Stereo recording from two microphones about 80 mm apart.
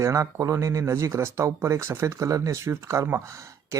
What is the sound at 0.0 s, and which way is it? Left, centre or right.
Speech, right.